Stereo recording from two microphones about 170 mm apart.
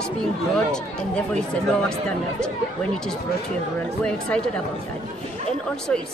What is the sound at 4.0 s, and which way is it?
Speech, 5° left (ahead or behind).